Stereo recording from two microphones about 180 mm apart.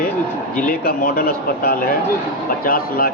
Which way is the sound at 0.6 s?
50° left (ahead or behind).